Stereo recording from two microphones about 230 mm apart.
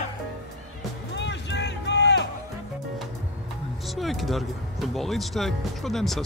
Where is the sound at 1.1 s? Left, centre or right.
Left.